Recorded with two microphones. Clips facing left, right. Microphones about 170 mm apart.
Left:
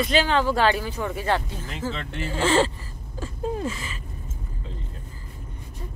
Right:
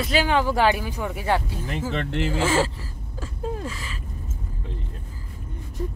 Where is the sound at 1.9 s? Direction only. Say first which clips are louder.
Right 6 dB; 80° right.